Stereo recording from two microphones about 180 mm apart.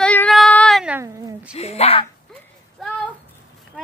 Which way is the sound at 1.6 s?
35° left (ahead or behind).